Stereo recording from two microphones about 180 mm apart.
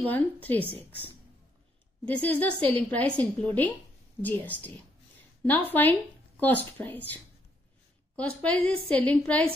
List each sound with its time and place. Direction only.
0.1 s a woman's voice: 10° left (ahead or behind)
2.0 s a woman's voice: 10° left (ahead or behind)
8.2 s a woman's voice: 5° left (ahead or behind)